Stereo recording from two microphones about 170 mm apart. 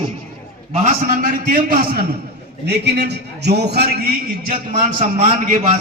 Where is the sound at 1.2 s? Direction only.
55° right (ahead or behind).